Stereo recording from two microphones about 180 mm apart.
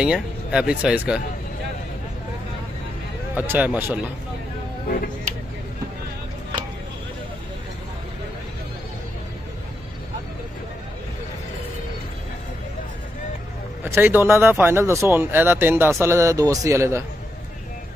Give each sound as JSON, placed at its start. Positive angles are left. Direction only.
{"t": 0.0, "sound": "speech", "side_deg": -5}
{"t": 3.3, "sound": "speech", "side_deg": -10}
{"t": 4.8, "sound": "speech", "side_deg": 55}
{"t": 13.8, "sound": "speech", "side_deg": -10}